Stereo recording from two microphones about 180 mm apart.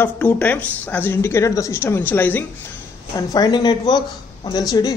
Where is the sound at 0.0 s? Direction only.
10° left (ahead or behind).